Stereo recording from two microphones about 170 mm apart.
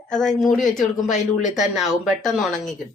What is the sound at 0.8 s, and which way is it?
Speech, 45° left (ahead or behind).